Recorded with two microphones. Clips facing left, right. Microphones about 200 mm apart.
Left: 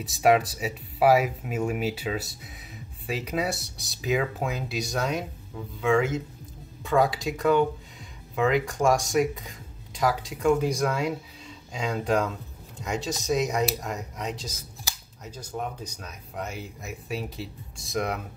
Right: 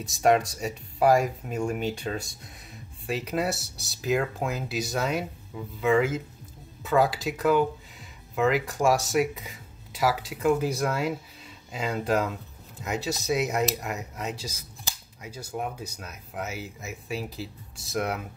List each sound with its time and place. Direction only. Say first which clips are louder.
0.0 s speech: left 1 dB; 5° left (ahead or behind)